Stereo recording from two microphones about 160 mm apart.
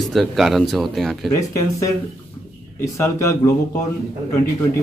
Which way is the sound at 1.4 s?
20° left (ahead or behind).